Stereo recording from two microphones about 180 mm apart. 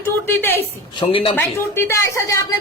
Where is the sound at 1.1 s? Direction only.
30° left (ahead or behind).